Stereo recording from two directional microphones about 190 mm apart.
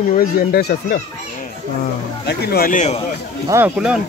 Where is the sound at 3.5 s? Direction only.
10° right (ahead or behind).